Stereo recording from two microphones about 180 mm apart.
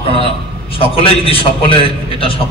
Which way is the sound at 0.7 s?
30° left (ahead or behind).